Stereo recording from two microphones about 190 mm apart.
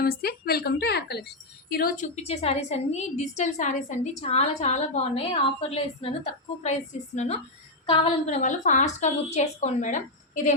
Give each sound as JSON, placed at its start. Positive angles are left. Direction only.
{"t": 0.0, "sound": "a woman's voice", "side_deg": 50}
{"t": 2.1, "sound": "a woman's voice", "side_deg": 35}
{"t": 7.9, "sound": "a woman's voice", "side_deg": 30}